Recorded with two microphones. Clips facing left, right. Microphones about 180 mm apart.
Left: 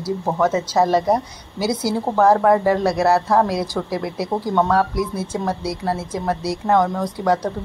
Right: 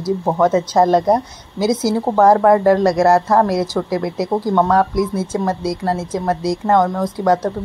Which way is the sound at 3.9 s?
10° left (ahead or behind).